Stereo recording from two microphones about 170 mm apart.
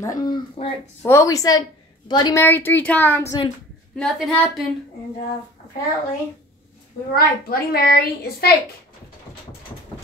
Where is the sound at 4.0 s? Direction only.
Centre (ahead or behind).